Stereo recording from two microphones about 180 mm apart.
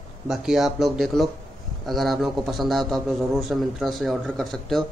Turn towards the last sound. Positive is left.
turn(degrees=0)  # may be behind; listen again after turning